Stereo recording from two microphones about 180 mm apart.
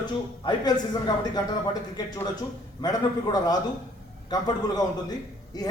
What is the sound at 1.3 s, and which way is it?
Speech, 20° left (ahead or behind).